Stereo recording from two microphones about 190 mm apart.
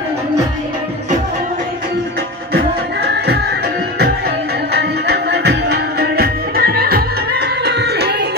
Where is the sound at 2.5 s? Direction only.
60° right (ahead or behind).